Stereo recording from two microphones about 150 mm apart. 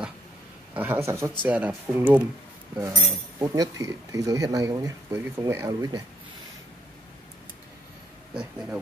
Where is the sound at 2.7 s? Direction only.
25° right (ahead or behind).